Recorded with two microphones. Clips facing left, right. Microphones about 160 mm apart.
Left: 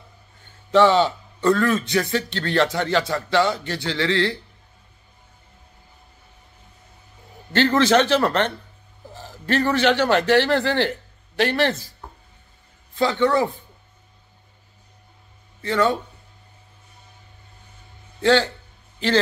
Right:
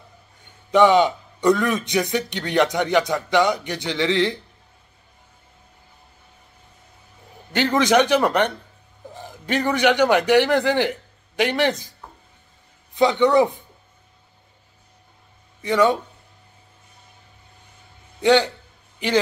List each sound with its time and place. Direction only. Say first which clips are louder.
0.7 s a man's voice: right 1 dB; 15° right (ahead or behind)
7.5 s a man's voice: even; 10° right (ahead or behind)
12.9 s a man's voice: right 3 dB; 20° right (ahead or behind)
15.6 s a man's voice: right 2 dB; 15° right (ahead or behind)
18.2 s a man's voice: right 1 dB; 15° right (ahead or behind)